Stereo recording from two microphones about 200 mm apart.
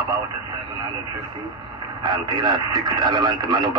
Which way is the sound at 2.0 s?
20° right (ahead or behind).